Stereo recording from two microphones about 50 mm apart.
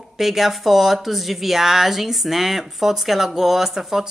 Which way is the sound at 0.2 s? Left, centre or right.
Centre.